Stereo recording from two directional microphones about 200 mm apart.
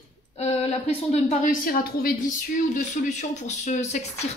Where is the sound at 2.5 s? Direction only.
40° left (ahead or behind).